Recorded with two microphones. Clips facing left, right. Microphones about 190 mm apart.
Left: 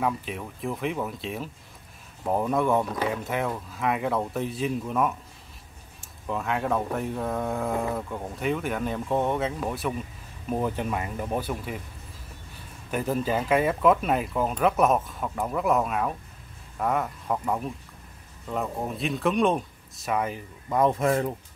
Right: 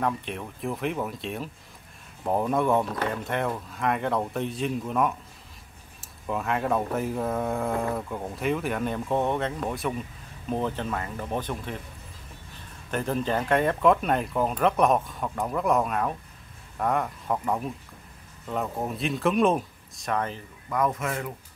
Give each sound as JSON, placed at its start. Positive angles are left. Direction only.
{"t": 0.0, "sound": "speech", "side_deg": 0}
{"t": 12.9, "sound": "speech", "side_deg": 5}
{"t": 20.7, "sound": "speech", "side_deg": 30}